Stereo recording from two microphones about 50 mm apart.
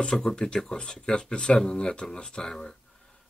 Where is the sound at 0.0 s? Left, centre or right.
Centre.